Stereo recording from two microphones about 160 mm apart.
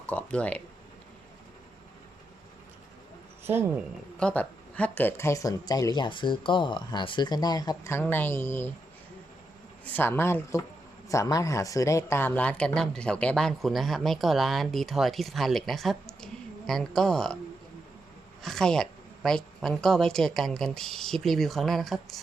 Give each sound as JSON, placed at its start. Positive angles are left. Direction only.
{"t": 0.0, "sound": "a woman's voice", "side_deg": 10}
{"t": 3.4, "sound": "speech", "side_deg": -15}
{"t": 4.2, "sound": "speech", "side_deg": 5}
{"t": 9.8, "sound": "a woman's voice", "side_deg": 10}
{"t": 18.4, "sound": "speech", "side_deg": 5}